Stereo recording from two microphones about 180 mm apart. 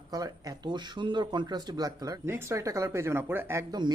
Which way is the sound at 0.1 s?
20° right (ahead or behind).